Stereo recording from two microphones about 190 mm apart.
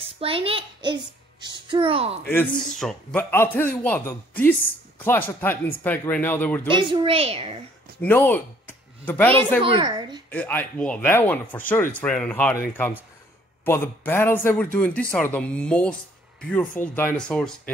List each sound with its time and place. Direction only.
0.0 s a child's voice: 30° right (ahead or behind)
2.2 s speech: 5° left (ahead or behind)
6.7 s a child's voice: 25° right (ahead or behind)
8.0 s speech: 10° left (ahead or behind)
9.6 s a child's voice: 25° right (ahead or behind)
10.3 s speech: 10° left (ahead or behind)